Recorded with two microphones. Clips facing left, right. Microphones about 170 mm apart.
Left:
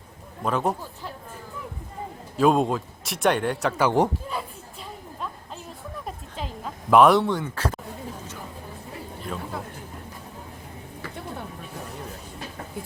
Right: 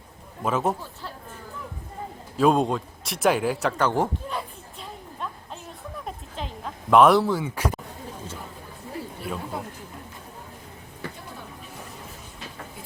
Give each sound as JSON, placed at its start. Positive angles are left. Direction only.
{"t": 0.4, "sound": "a man's voice", "side_deg": 0}
{"t": 2.4, "sound": "a man's voice", "side_deg": 0}
{"t": 3.8, "sound": "speech", "side_deg": 20}
{"t": 4.3, "sound": "a sound", "side_deg": 0}
{"t": 9.2, "sound": "speech", "side_deg": -10}